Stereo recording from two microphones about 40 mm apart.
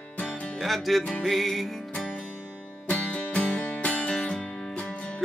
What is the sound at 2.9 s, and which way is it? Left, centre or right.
Music, left.